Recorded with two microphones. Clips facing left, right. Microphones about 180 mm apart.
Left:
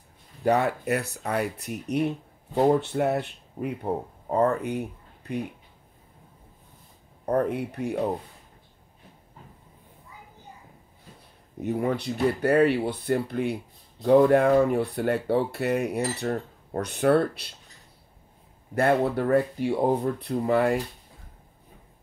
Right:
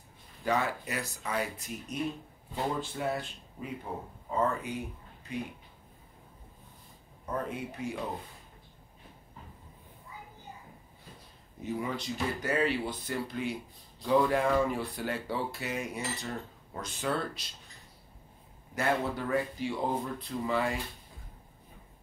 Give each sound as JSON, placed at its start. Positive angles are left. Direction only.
{"t": 0.4, "sound": "speech", "side_deg": 60}
{"t": 7.2, "sound": "speech", "side_deg": 65}
{"t": 11.6, "sound": "speech", "side_deg": 60}
{"t": 18.8, "sound": "speech", "side_deg": 60}